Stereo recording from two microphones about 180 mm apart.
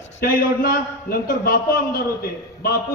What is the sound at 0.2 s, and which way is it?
A man's voice, 55° left (ahead or behind).